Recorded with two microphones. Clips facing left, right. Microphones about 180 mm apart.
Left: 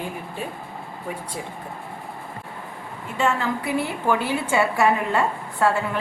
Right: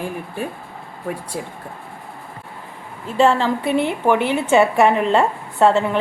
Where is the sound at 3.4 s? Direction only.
25° right (ahead or behind).